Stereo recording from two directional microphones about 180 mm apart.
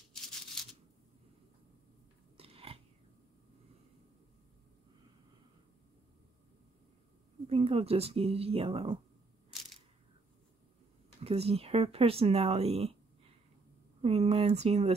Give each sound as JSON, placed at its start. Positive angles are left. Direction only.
{"t": 2.3, "sound": "biting", "side_deg": -30}
{"t": 7.4, "sound": "speech", "side_deg": -35}
{"t": 11.1, "sound": "speech", "side_deg": -35}